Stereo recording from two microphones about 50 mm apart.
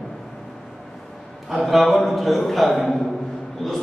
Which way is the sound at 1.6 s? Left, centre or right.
Centre.